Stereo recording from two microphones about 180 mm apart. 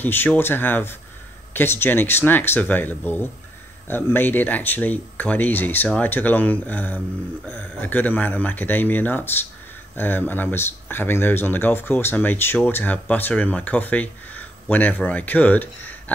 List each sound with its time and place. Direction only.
0.0 s speech: 10° left (ahead or behind)